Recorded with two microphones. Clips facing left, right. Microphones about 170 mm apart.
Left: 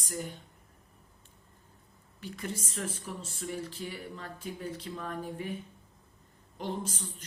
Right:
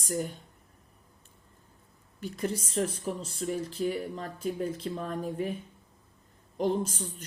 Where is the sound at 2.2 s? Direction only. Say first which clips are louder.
Right 6 dB; 45° right (ahead or behind).